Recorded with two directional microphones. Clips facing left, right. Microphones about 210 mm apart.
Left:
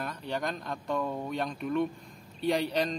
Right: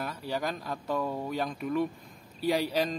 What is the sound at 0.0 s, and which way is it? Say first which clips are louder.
Mantra: right 1 dB; 5° right (ahead or behind).